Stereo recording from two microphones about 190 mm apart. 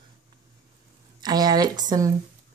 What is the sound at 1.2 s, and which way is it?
Speech, 20° right (ahead or behind).